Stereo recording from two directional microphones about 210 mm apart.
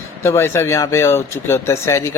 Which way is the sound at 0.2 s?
10° left (ahead or behind).